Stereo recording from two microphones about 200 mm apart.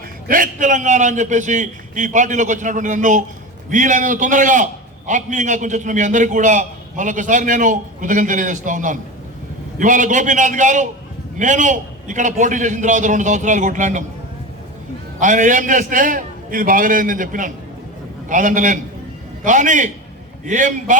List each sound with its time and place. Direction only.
0.3 s a man's voice: 40° right (ahead or behind)
15.2 s a man's voice: 40° right (ahead or behind)